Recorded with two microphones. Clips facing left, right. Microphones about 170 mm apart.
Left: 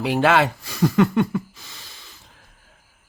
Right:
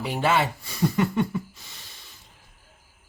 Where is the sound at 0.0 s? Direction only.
90° left.